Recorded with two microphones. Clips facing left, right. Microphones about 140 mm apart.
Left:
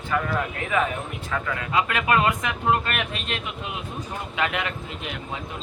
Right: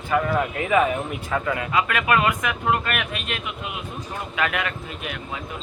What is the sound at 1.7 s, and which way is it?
Speech, 25° left (ahead or behind).